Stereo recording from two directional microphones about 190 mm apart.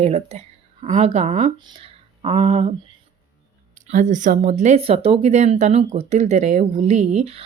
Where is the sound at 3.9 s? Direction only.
40° right (ahead or behind).